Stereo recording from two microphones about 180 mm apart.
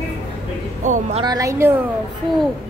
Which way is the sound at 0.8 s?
45° right (ahead or behind).